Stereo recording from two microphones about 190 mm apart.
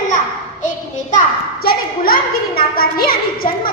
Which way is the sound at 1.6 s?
50° left (ahead or behind).